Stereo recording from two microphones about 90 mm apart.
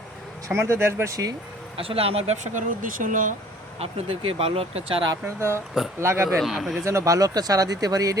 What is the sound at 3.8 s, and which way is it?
Speech, 90° right.